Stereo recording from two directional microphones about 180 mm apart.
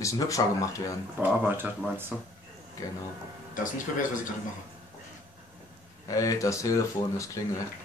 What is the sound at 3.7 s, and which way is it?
Speech, 45° left (ahead or behind).